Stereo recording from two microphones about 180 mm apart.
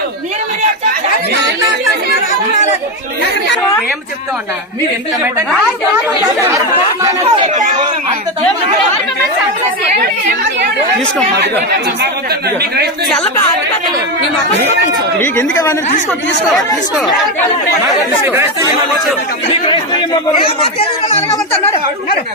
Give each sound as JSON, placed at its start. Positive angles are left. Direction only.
{"t": 7.0, "sound": "speech", "side_deg": -20}
{"t": 7.4, "sound": "speech", "side_deg": -40}
{"t": 12.3, "sound": "speech", "side_deg": -60}
{"t": 13.1, "sound": "a woman's voice", "side_deg": 5}
{"t": 15.2, "sound": "speech", "side_deg": 15}
{"t": 20.4, "sound": "speech", "side_deg": 35}